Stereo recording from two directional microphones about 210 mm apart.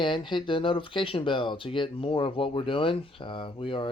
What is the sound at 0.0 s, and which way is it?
Speech, 20° left (ahead or behind).